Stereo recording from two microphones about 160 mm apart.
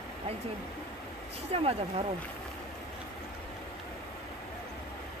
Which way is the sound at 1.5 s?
35° right (ahead or behind).